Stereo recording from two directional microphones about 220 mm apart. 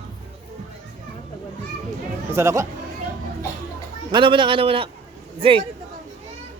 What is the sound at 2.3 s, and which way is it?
Speech, 10° right (ahead or behind).